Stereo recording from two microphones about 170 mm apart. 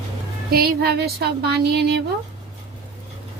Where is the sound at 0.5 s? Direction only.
65° right (ahead or behind).